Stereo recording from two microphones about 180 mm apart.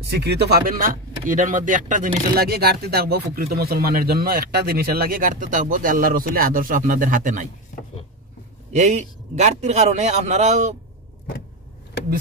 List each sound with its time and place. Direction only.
0.0 s speech: 65° right (ahead or behind); by 7.4 s 45° right (ahead or behind)
8.7 s a man's voice: 40° right (ahead or behind)